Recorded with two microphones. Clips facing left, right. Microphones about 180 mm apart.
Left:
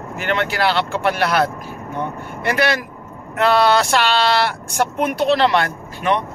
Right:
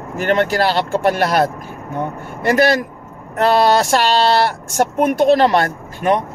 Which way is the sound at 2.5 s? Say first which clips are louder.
Right 5 dB; 40° right (ahead or behind).